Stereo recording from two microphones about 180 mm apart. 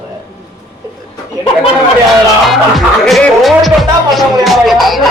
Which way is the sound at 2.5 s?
Centre (ahead or behind).